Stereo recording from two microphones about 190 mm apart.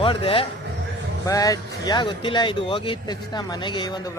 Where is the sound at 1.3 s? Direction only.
20° left (ahead or behind).